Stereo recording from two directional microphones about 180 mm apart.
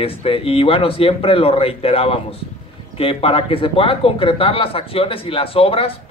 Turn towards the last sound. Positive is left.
turn(degrees=30)  # may be behind; listen again after turning